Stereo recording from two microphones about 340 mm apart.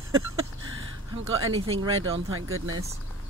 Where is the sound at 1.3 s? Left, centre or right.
Right.